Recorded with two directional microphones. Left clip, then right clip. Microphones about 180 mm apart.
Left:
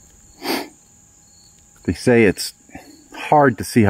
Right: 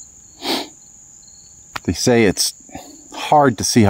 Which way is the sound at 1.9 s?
15° right (ahead or behind).